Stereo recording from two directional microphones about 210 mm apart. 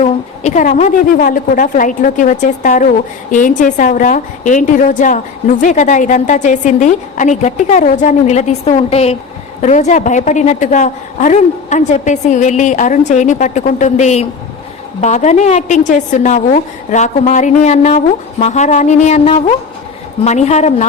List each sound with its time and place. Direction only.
0.0 s a woman's voice: 35° left (ahead or behind)